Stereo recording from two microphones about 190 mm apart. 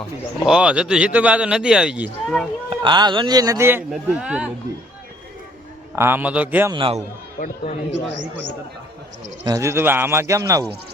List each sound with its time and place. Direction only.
0.4 s speech: 5° right (ahead or behind)
2.6 s a man's voice: 25° right (ahead or behind); by 4.5 s 5° right (ahead or behind)
6.0 s a man's voice: 10° right (ahead or behind)
6.7 s a man's voice: 30° right (ahead or behind)
7.3 s speech: 45° left (ahead or behind)
9.4 s a man's voice: 20° right (ahead or behind)